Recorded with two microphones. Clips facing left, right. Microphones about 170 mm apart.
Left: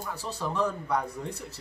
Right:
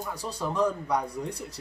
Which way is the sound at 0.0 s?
10° right (ahead or behind).